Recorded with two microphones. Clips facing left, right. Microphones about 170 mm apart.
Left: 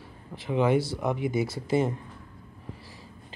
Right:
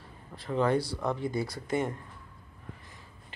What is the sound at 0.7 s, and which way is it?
Speech, 20° left (ahead or behind).